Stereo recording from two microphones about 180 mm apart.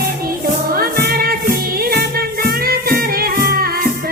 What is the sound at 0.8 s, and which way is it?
Music, 55° right (ahead or behind).